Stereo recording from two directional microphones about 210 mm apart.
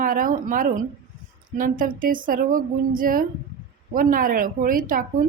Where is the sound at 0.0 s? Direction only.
40° right (ahead or behind).